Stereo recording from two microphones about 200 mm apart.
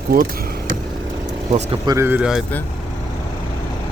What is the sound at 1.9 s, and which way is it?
Speech, 15° right (ahead or behind).